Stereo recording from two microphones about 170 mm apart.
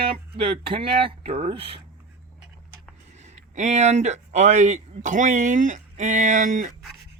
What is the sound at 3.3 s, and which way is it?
Speech, 45° right (ahead or behind).